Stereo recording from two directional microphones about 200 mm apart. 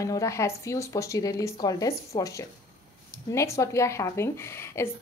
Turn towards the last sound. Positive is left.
turn(degrees=10)  # may be behind; listen again after turning